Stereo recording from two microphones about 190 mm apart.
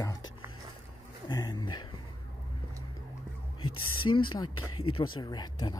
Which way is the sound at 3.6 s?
90° left.